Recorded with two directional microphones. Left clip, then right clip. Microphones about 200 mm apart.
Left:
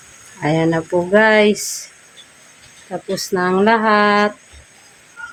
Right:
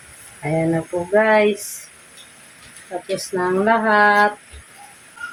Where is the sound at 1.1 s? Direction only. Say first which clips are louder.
Left 2 dB; 55° left (ahead or behind).